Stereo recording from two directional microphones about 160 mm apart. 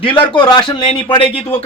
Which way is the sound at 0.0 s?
30° left (ahead or behind).